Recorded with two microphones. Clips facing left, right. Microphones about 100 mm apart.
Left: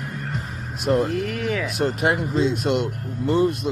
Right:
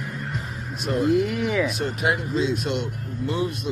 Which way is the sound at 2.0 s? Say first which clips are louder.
Left 1 dB; 50° left (ahead or behind).